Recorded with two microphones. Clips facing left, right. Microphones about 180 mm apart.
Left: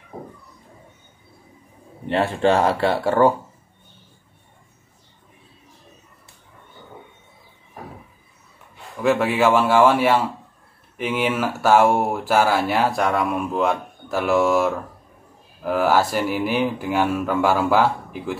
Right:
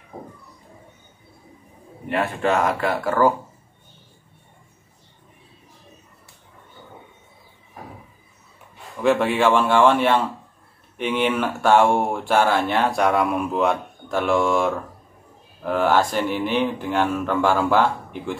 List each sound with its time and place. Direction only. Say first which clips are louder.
2.0 s speech: left 3 dB; 30° left (ahead or behind)
9.0 s speech: even; 5° left (ahead or behind)
15.6 s mantra: left 1 dB; 5° left (ahead or behind)